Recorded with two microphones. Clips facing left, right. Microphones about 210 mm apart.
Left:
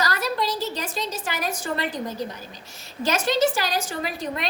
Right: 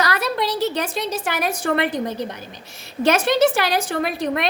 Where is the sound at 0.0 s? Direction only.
65° right (ahead or behind).